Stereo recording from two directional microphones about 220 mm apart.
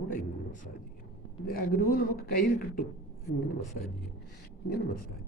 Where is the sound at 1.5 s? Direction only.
40° left (ahead or behind).